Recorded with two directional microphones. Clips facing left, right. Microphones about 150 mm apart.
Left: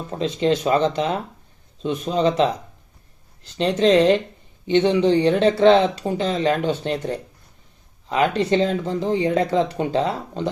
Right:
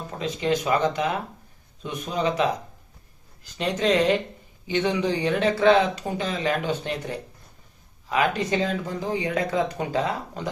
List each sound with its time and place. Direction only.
0.2 s speech: 30° left (ahead or behind)
8.1 s speech: 30° left (ahead or behind)